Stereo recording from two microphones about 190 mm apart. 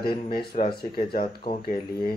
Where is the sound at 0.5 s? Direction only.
35° left (ahead or behind).